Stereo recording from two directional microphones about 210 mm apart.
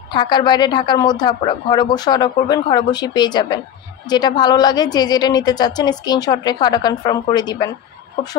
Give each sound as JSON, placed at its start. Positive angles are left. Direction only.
{"t": 0.1, "sound": "speech", "side_deg": 20}